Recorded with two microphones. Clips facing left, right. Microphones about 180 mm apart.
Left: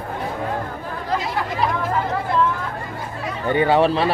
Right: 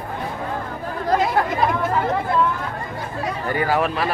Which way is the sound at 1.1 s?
45° right (ahead or behind).